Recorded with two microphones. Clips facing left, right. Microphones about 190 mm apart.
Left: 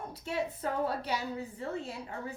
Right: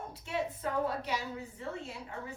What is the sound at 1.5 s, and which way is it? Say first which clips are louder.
Speech: left 3 dB; 35° left (ahead or behind).